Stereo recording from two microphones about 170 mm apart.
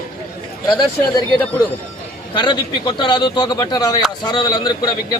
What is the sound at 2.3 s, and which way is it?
A man's voice, 25° left (ahead or behind).